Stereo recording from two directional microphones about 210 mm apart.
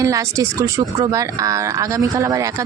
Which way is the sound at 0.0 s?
15° right (ahead or behind).